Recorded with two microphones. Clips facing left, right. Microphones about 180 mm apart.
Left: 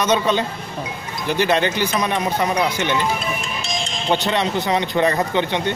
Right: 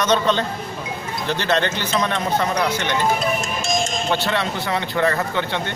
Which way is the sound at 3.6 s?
45° right (ahead or behind).